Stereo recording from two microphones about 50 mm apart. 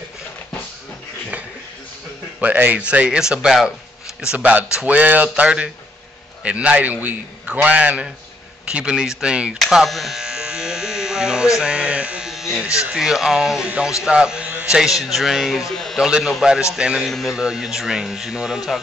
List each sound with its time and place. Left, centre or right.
2.4 s speech: right
2.8 s a sound: right
3.2 s speech: centre
4.2 s a sound: right
9.2 s speech: centre
9.8 s speech: centre
10.2 s electric shaver: centre
12.3 s electric shaver: centre
12.9 s speech: centre
14.8 s speech: centre
15.7 s speech: centre
16.0 s speech: centre